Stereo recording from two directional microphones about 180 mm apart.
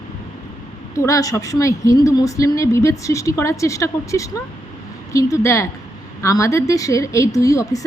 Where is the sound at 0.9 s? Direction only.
20° left (ahead or behind).